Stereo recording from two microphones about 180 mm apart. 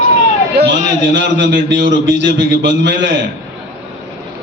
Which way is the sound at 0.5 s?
75° right (ahead or behind).